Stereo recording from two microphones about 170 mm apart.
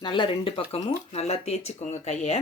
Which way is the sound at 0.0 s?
30° left (ahead or behind).